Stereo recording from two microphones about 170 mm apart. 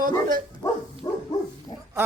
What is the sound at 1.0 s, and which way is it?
Dog, 25° left (ahead or behind).